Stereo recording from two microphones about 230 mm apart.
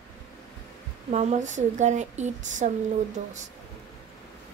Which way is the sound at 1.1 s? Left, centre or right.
Right.